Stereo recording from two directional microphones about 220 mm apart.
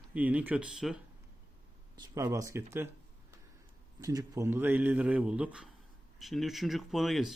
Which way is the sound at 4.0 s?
15° right (ahead or behind).